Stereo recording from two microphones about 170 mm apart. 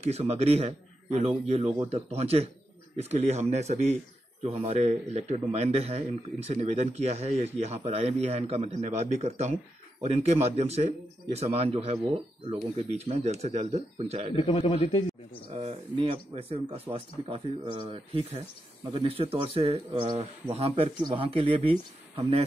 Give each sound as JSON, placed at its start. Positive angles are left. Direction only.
{"t": 0.0, "sound": "speech", "side_deg": -40}
{"t": 14.3, "sound": "a man's voice", "side_deg": 35}
{"t": 15.5, "sound": "speech", "side_deg": -35}